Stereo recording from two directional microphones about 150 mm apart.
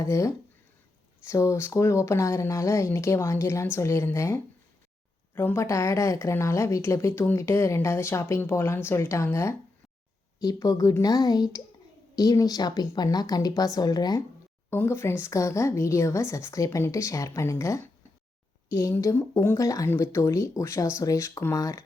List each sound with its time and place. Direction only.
0.0 s a woman's voice: 20° left (ahead or behind)